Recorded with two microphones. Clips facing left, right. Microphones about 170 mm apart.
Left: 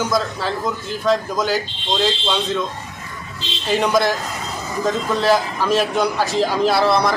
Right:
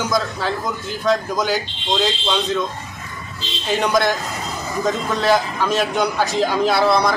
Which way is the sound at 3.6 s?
Centre (ahead or behind).